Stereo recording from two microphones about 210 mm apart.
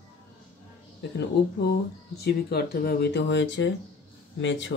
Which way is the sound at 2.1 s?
50° left (ahead or behind).